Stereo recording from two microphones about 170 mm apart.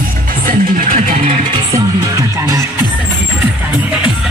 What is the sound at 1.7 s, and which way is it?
Music, 20° right (ahead or behind).